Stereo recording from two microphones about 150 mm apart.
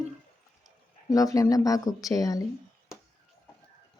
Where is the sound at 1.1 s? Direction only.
20° left (ahead or behind).